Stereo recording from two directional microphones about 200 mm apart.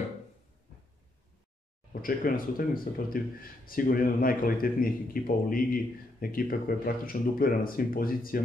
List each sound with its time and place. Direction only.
1.9 s a man's voice: 45° left (ahead or behind)